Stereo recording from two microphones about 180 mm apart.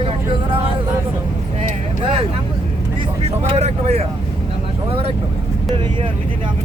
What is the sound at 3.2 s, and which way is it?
Vehicle, 35° right (ahead or behind).